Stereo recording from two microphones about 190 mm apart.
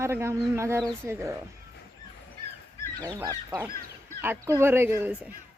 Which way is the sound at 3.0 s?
15° right (ahead or behind).